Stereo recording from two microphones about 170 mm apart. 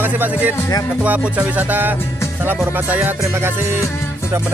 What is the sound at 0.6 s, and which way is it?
Music, 20° left (ahead or behind).